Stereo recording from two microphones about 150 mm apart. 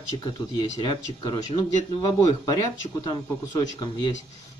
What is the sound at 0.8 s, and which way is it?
A man's voice, 30° left (ahead or behind).